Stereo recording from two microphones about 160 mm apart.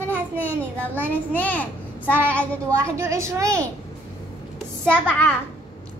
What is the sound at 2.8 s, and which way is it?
Speech, 20° right (ahead or behind).